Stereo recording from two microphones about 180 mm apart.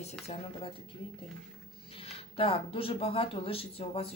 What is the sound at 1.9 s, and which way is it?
Speech, 30° left (ahead or behind).